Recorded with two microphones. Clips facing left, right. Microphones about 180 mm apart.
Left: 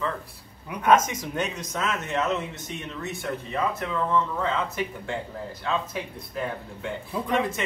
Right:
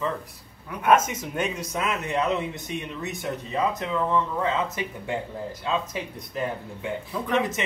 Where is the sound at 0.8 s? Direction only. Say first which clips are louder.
Even; 5° right (ahead or behind).